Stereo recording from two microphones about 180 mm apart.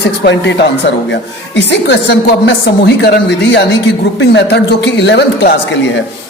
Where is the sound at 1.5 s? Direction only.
70° left (ahead or behind).